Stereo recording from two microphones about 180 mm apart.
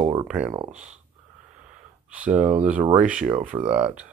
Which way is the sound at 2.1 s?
10° right (ahead or behind).